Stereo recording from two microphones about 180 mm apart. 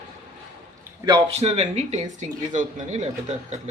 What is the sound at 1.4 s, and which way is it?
Speech, 40° right (ahead or behind).